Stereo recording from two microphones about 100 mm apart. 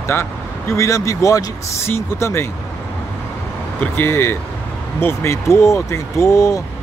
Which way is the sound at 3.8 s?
20° left (ahead or behind).